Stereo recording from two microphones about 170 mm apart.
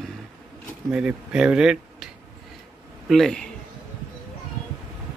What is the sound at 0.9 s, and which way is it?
Speech, 5° right (ahead or behind).